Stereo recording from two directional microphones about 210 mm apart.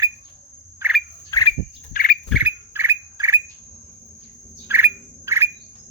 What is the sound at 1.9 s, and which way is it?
Rodents, 45° left (ahead or behind).